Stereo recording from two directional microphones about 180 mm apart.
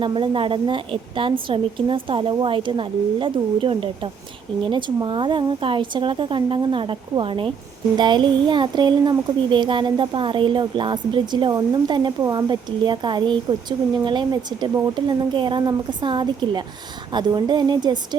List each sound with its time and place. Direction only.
0.0 s speech: 30° right (ahead or behind)